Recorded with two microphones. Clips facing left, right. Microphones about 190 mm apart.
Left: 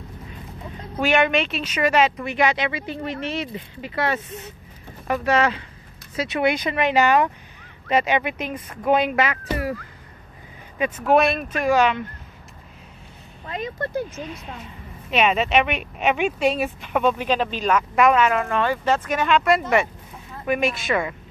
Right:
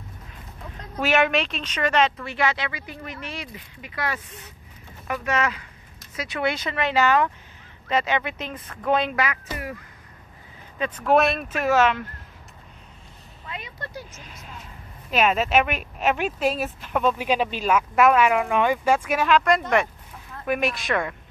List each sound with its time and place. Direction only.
0.9 s a woman's voice: centre (ahead or behind)
9.1 s speech: 25° left (ahead or behind)
10.8 s speech: 5° left (ahead or behind)
13.5 s speech: 45° left (ahead or behind); by 14.6 s 60° left (ahead or behind)
15.0 s speech: centre (ahead or behind)